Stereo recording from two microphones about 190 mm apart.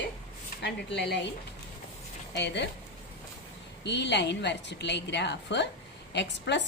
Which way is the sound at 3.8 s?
65° left (ahead or behind).